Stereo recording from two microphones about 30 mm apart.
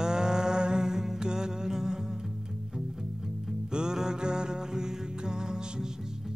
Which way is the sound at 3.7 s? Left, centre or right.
Right.